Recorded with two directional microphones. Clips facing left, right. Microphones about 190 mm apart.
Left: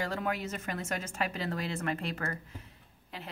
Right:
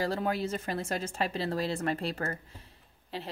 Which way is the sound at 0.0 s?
35° right (ahead or behind).